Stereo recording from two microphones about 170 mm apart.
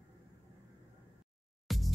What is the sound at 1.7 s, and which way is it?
Music, centre (ahead or behind).